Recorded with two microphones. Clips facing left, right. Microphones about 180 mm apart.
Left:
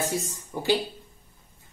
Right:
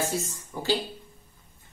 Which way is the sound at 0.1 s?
15° left (ahead or behind).